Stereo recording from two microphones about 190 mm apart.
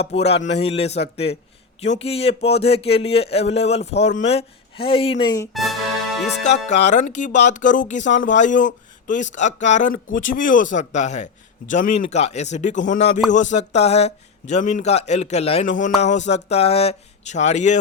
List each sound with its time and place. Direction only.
0.1 s speech: 30° left (ahead or behind)
5.5 s music: centre (ahead or behind)
6.7 s speech: 40° left (ahead or behind)